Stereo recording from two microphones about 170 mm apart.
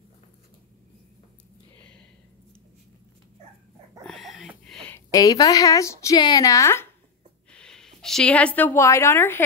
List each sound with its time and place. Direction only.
4.0 s a sound: centre (ahead or behind)
5.1 s speech: 20° left (ahead or behind)
7.5 s a woman's voice: 5° left (ahead or behind)